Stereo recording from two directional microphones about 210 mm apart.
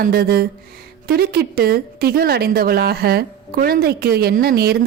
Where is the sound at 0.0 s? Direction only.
45° right (ahead or behind).